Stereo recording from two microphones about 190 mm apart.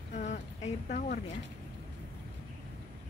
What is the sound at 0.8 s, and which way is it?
Speech, 40° left (ahead or behind).